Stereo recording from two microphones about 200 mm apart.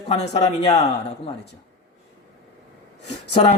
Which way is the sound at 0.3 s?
30° left (ahead or behind).